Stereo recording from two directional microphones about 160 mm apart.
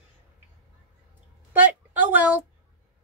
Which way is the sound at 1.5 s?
10° right (ahead or behind).